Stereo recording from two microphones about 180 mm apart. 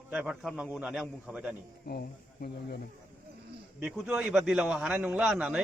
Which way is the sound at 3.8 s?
5° right (ahead or behind).